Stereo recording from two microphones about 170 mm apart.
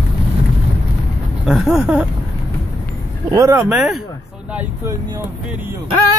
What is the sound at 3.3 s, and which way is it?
Speech, 20° right (ahead or behind).